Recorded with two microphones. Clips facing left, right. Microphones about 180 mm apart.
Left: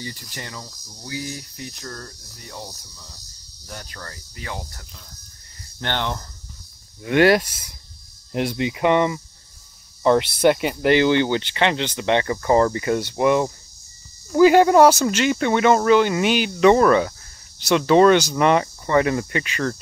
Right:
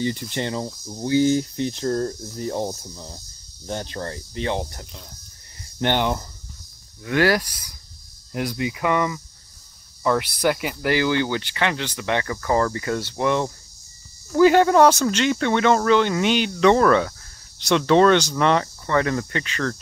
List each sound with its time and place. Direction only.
0.0 s speech: 25° right (ahead or behind)
7.0 s speech: 20° left (ahead or behind)